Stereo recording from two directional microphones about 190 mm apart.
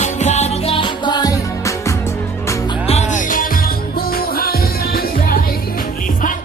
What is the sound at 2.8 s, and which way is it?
Music, 35° left (ahead or behind).